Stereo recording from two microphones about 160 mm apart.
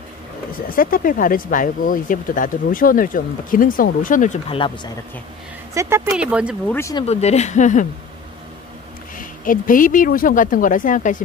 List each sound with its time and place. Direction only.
0.7 s speech: 60° left (ahead or behind)
4.5 s speech: 30° left (ahead or behind)
5.8 s speech: 15° right (ahead or behind)
6.7 s speech: 15° left (ahead or behind)
7.1 s speech: 45° left (ahead or behind)
9.2 s speech: 60° left (ahead or behind)